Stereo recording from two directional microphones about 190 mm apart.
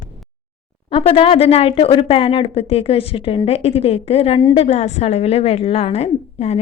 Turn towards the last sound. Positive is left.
turn(degrees=35)  # may be behind; listen again after turning